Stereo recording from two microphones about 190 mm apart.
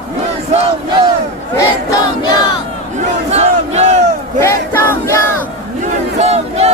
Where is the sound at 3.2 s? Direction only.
35° right (ahead or behind).